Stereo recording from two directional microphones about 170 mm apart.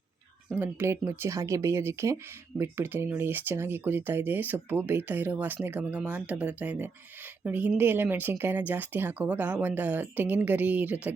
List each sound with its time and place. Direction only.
0.5 s speech: 10° right (ahead or behind)